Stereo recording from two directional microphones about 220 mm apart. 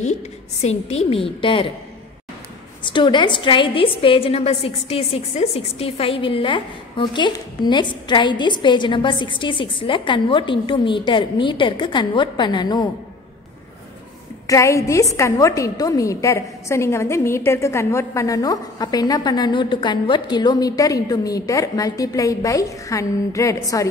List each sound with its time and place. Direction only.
0.0 s a woman's voice: 30° left (ahead or behind)
2.8 s a woman's voice: 20° left (ahead or behind)
14.5 s a woman's voice: 15° left (ahead or behind)